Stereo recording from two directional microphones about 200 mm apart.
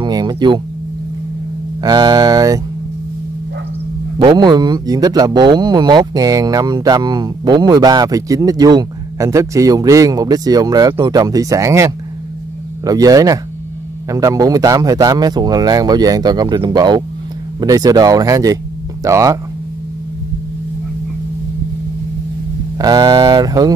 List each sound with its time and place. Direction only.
0.0 s a sound: 20° right (ahead or behind)
1.8 s speech: 20° right (ahead or behind)
4.2 s speech: 20° right (ahead or behind)
22.8 s speech: 20° right (ahead or behind)